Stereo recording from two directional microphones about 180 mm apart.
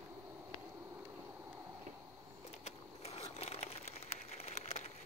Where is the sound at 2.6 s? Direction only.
35° left (ahead or behind).